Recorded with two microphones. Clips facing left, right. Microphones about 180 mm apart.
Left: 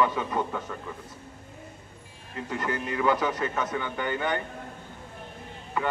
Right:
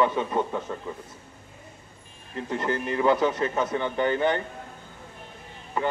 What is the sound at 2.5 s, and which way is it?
A man's voice, 30° right (ahead or behind).